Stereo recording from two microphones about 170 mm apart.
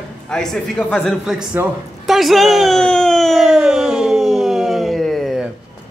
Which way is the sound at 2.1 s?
Centre (ahead or behind).